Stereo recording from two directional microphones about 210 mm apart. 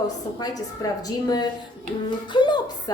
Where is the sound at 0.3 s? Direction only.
15° left (ahead or behind).